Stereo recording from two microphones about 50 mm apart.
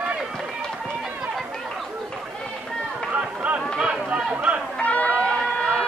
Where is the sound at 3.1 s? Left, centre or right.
Right.